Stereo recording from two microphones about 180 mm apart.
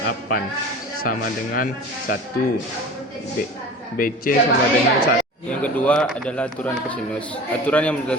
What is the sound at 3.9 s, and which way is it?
Speech, 50° left (ahead or behind).